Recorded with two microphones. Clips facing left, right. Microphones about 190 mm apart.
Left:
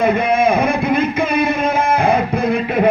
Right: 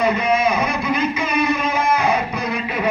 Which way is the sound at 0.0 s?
55° left (ahead or behind).